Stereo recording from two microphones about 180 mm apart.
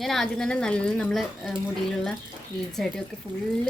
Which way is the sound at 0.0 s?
Centre (ahead or behind).